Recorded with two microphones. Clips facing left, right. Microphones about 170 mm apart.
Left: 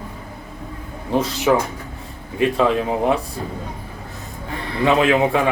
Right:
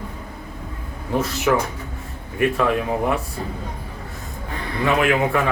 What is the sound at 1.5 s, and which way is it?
A man's voice, 15° left (ahead or behind).